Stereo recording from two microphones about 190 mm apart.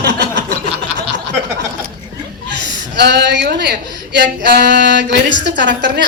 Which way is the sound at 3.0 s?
65° right (ahead or behind).